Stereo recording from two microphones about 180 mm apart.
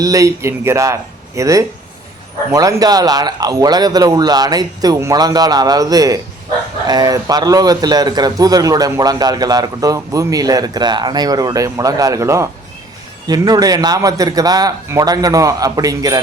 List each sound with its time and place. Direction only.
0.0 s a man's voice: 20° right (ahead or behind)